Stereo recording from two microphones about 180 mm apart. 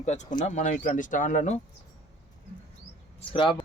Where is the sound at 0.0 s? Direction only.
40° left (ahead or behind).